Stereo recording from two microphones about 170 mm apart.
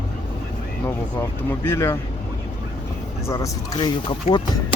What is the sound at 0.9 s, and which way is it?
Speech, 15° left (ahead or behind).